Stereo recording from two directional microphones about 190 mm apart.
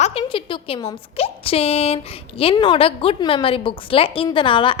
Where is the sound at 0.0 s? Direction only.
30° left (ahead or behind).